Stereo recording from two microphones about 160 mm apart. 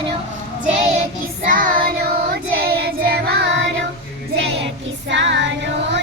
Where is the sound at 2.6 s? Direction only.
80° right.